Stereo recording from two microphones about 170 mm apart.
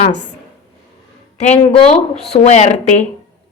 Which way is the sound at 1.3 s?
40° left (ahead or behind).